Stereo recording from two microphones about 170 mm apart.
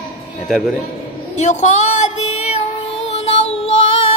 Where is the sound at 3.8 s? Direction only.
35° left (ahead or behind).